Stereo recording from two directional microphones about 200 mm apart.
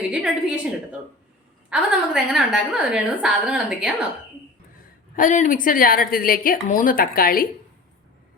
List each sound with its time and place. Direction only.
0.1 s a woman's voice: 5° right (ahead or behind)
1.7 s a woman's voice: 5° right (ahead or behind)
5.1 s a woman's voice: 40° left (ahead or behind)